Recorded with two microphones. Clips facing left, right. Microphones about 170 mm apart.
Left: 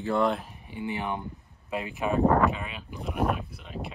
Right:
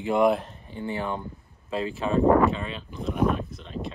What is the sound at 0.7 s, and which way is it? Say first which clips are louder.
Speech: right 2 dB; 15° left (ahead or behind).